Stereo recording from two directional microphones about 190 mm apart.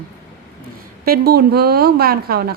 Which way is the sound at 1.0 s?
55° right (ahead or behind).